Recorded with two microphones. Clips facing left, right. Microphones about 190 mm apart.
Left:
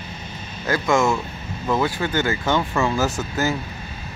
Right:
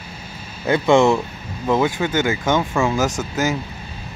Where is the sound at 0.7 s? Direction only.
30° right (ahead or behind).